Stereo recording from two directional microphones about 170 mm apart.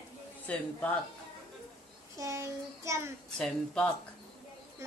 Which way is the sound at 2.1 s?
15° right (ahead or behind).